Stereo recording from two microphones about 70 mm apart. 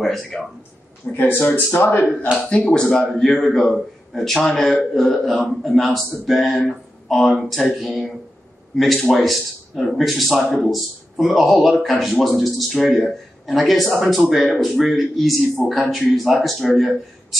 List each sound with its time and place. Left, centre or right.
0.0 s speech: centre
1.1 s speech: left
2.5 s a man's voice: centre